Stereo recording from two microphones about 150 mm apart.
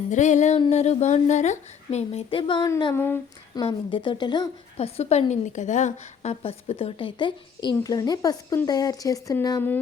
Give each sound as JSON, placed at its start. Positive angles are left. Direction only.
{"t": 0.1, "sound": "speech", "side_deg": 55}
{"t": 2.4, "sound": "speech", "side_deg": 30}
{"t": 4.8, "sound": "speech", "side_deg": 45}
{"t": 6.4, "sound": "speech", "side_deg": 40}